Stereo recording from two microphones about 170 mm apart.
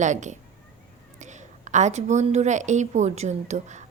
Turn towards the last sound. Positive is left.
turn(degrees=-45)  # may be behind; listen again after turning